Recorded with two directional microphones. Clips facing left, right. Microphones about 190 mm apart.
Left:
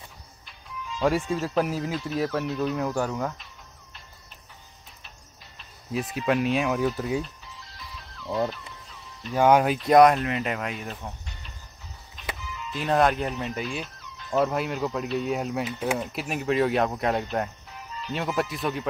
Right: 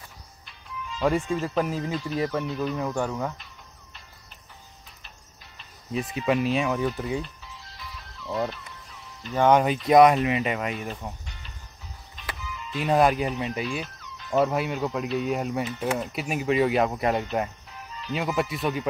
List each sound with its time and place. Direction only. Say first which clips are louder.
1.0 s speech: even; 5° left (ahead or behind)
5.6 s speech: even; centre (ahead or behind)
7.7 s music: right 1 dB; centre (ahead or behind)
9.2 s speech: even; 5° left (ahead or behind)
12.7 s speech: right 1 dB; 5° right (ahead or behind)